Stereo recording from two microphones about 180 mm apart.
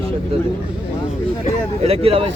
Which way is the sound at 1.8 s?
35° right (ahead or behind).